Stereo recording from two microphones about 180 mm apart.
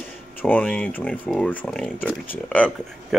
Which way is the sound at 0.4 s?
10° left (ahead or behind).